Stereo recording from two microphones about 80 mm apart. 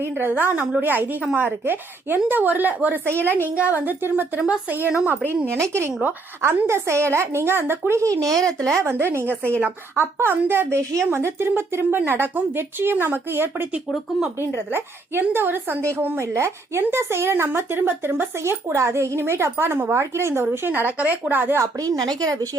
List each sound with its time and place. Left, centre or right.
0.0 s a woman's voice: right
5.5 s speech: right
8.4 s speech: centre
8.8 s a woman's voice: right
14.7 s a woman's voice: right
21.6 s a woman's voice: right